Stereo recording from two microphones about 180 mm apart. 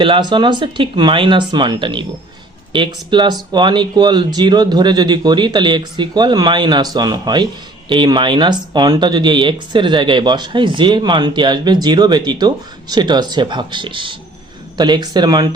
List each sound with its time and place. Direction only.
0.0 s speech: 25° right (ahead or behind)